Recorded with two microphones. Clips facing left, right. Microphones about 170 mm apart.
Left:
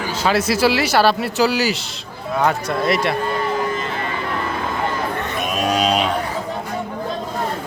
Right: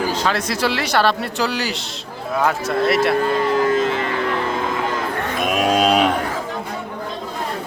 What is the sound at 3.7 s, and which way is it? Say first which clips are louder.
Music: right 6 dB; 90° right.